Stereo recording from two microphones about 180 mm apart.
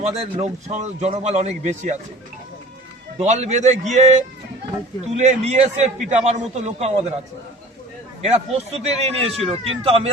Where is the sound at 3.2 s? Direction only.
40° right (ahead or behind).